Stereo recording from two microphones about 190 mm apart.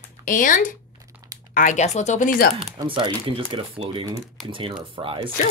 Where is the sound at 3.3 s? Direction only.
25° right (ahead or behind).